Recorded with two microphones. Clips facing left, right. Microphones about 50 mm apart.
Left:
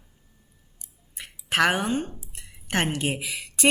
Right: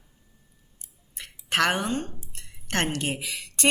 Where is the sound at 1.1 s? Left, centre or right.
Centre.